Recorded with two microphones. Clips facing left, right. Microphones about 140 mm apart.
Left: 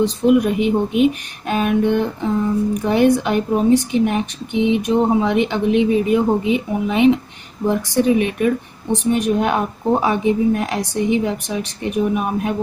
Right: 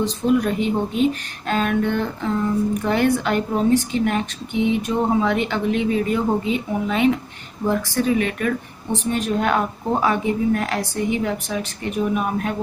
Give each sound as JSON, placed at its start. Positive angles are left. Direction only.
{"t": 0.0, "sound": "a woman's voice", "side_deg": 15}